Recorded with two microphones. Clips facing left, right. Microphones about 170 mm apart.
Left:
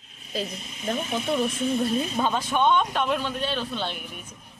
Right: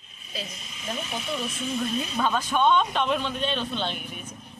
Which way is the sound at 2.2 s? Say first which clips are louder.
Right 3 dB; 20° left (ahead or behind).